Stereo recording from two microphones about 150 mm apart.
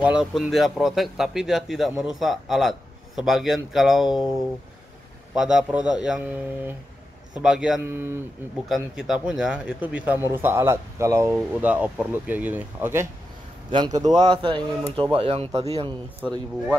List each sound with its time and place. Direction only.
0.0 s a man's voice: 5° right (ahead or behind)
7.8 s speech: 15° right (ahead or behind)
8.6 s speech: centre (ahead or behind)
13.7 s a man's voice: 30° right (ahead or behind)